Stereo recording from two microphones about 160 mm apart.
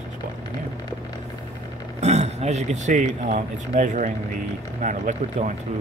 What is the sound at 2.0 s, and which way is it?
Speech, 45° right (ahead or behind).